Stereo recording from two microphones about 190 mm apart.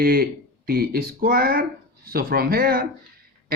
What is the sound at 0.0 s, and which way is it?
Speech, 50° right (ahead or behind).